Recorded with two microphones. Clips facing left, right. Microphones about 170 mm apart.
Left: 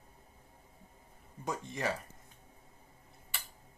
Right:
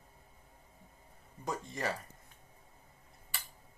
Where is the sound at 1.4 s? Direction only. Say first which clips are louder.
Left 1 dB; 20° left (ahead or behind).